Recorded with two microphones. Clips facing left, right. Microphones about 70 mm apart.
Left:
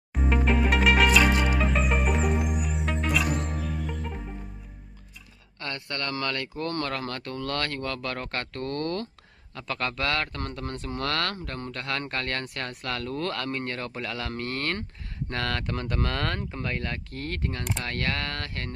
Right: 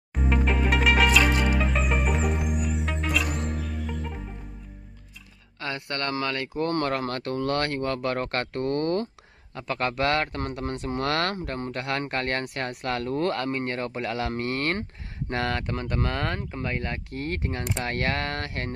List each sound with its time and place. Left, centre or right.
0.1 s music: centre
5.6 s speech: centre
5.9 s speech: right
6.2 s speech: centre
6.6 s speech: right
12.1 s speech: right
15.5 s speech: centre
16.7 s speech: centre